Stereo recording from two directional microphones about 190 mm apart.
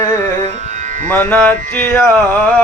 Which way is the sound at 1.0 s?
10° left (ahead or behind).